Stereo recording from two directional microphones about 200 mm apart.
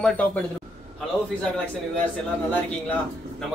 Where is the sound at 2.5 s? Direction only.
10° left (ahead or behind).